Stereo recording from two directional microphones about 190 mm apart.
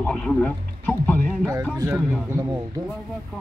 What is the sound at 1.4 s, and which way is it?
Speech, 15° right (ahead or behind).